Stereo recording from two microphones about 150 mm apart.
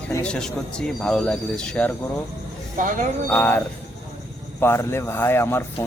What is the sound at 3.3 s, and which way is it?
A man's voice, 10° left (ahead or behind).